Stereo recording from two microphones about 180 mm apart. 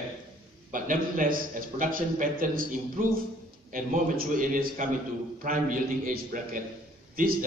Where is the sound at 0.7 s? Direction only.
45° right (ahead or behind).